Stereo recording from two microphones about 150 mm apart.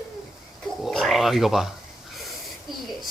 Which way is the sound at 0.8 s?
Centre (ahead or behind).